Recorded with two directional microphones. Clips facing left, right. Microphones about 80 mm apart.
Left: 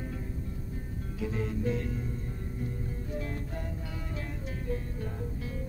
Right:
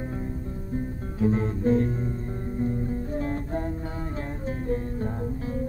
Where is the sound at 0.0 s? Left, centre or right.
Right.